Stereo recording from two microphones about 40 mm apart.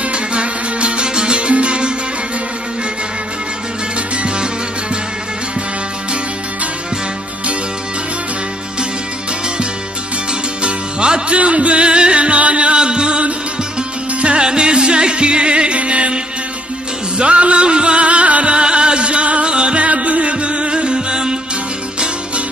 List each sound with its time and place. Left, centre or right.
0.1 s music: right
10.6 s music: right
17.2 s music: right